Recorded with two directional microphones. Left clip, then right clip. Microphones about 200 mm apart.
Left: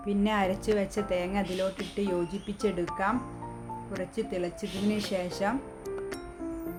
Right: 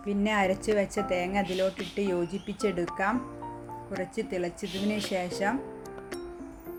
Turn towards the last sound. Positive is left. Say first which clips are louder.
# right 1 dB
turn(degrees=-5)  # may be behind; listen again after turning